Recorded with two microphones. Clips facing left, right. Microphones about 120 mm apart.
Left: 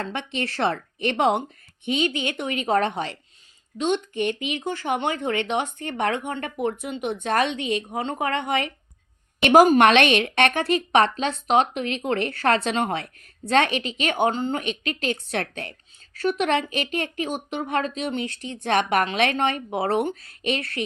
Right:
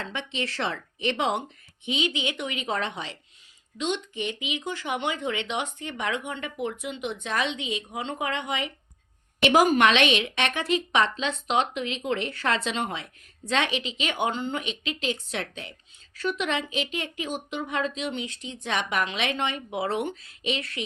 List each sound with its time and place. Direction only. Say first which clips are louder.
0.0 s speech: left 4 dB; 50° left (ahead or behind)